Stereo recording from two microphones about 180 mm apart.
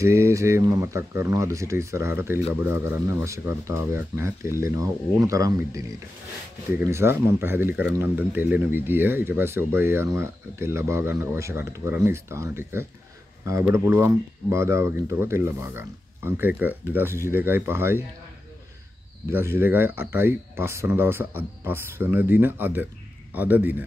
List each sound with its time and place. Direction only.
0.0 s speech: 15° right (ahead or behind)
19.3 s speech: 15° right (ahead or behind)